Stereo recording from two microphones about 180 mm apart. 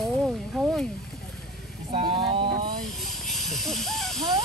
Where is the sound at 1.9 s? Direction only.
25° right (ahead or behind).